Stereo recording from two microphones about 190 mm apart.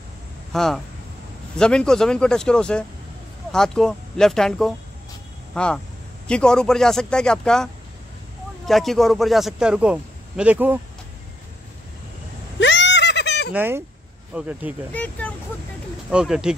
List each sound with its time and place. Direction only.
0.5 s a man's voice: centre (ahead or behind)
12.5 s a sound: 70° left (ahead or behind)
13.5 s speech: 10° right (ahead or behind)
14.9 s speech: 10° left (ahead or behind)
16.1 s a man's voice: 5° right (ahead or behind)